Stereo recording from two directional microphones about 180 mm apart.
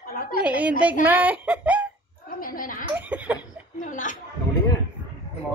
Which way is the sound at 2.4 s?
50° left (ahead or behind).